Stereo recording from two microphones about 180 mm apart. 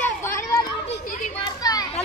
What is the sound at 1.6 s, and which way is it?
Children playing, 20° left (ahead or behind).